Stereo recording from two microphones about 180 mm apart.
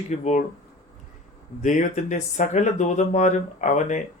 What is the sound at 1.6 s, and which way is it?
Speech, 45° left (ahead or behind).